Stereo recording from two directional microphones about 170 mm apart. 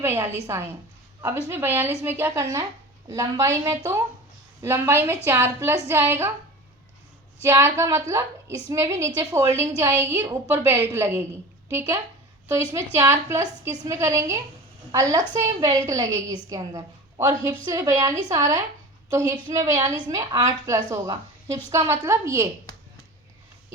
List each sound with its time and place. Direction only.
0.0 s a woman's voice: 15° right (ahead or behind)
7.4 s a woman's voice: 15° right (ahead or behind)
12.5 s a woman's voice: 15° right (ahead or behind)